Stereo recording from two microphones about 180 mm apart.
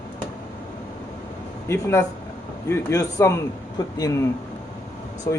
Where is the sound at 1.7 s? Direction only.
15° left (ahead or behind).